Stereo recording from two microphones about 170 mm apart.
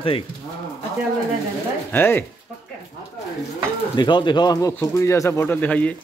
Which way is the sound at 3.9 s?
25° left (ahead or behind).